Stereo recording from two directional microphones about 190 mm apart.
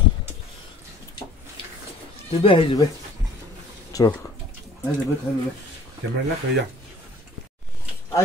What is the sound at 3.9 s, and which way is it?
Speech, 20° left (ahead or behind).